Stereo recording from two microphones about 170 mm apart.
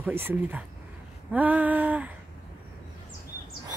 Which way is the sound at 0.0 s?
15° right (ahead or behind).